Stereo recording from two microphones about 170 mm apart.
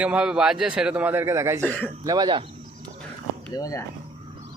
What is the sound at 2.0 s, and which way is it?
Speech, 25° right (ahead or behind).